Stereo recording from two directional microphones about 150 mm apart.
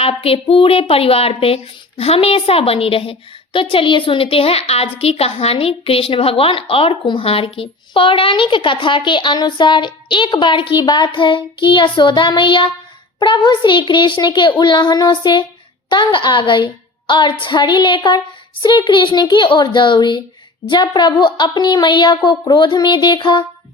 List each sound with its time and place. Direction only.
0.0 s a woman's voice: 40° left (ahead or behind)